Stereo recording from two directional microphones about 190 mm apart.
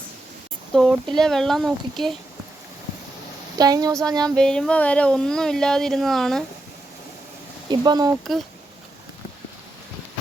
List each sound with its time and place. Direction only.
0.7 s speech: centre (ahead or behind)
3.6 s speech: 20° right (ahead or behind)
4.4 s speech: 5° left (ahead or behind)
7.7 s speech: 20° right (ahead or behind)